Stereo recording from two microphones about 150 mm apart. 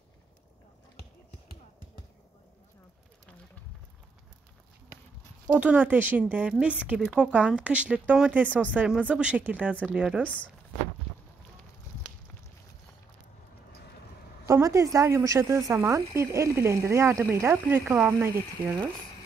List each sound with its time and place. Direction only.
5.6 s speech: 10° right (ahead or behind)
10.2 s speech: 10° left (ahead or behind)
14.4 s a woman's voice: 20° right (ahead or behind)